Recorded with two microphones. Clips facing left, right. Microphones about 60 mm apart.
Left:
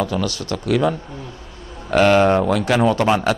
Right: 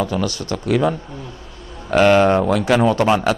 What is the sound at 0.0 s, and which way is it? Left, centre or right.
A man's voice, centre.